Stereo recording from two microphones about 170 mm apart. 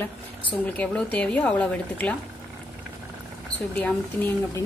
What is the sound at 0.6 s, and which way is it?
Speech, 10° left (ahead or behind).